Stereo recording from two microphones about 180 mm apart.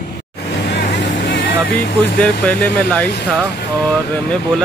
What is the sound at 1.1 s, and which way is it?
Vehicle, 90° left.